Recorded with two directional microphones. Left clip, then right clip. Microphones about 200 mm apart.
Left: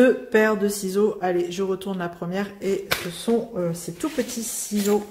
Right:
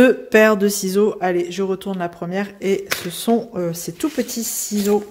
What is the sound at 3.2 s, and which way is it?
Speech, 50° right (ahead or behind).